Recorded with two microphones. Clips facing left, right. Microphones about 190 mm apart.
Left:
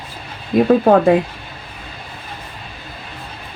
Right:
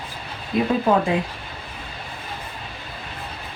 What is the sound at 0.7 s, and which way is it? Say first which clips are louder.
Speech: left 9 dB; 60° left (ahead or behind).